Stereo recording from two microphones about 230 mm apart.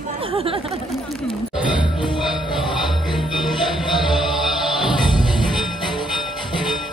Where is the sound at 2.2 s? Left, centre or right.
Centre.